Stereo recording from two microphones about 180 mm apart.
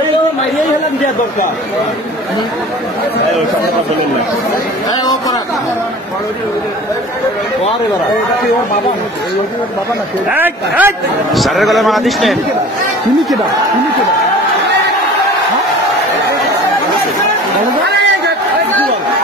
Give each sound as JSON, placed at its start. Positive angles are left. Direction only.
{"t": 10.3, "sound": "a man's voice", "side_deg": -10}
{"t": 11.3, "sound": "a man's voice", "side_deg": 0}
{"t": 17.8, "sound": "crowd", "side_deg": -75}